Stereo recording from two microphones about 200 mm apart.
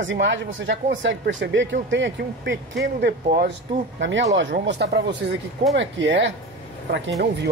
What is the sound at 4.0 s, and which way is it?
Speech, 65° right (ahead or behind).